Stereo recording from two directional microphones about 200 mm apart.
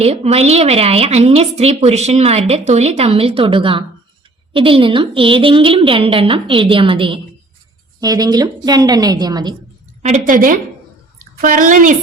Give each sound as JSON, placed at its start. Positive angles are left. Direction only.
{"t": 0.0, "sound": "a woman's voice", "side_deg": -30}
{"t": 10.0, "sound": "a woman's voice", "side_deg": -40}